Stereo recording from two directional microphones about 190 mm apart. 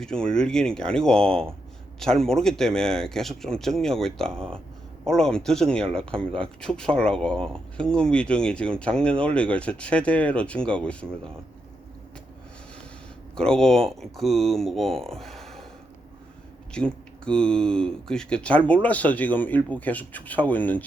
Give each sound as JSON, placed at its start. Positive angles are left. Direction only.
{"t": 0.0, "sound": "speech", "side_deg": 5}
{"t": 13.3, "sound": "speech", "side_deg": 5}
{"t": 16.7, "sound": "speech", "side_deg": 5}